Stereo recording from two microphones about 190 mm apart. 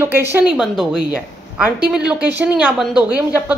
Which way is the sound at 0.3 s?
5° right (ahead or behind).